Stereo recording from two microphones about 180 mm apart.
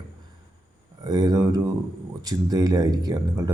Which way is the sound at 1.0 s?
20° right (ahead or behind).